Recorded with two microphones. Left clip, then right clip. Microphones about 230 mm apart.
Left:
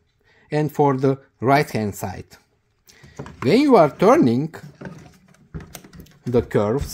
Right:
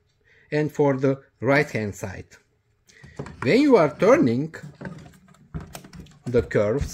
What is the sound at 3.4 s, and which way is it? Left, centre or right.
Speech, left.